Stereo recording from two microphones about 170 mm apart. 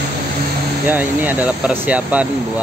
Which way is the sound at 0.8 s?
10° right (ahead or behind).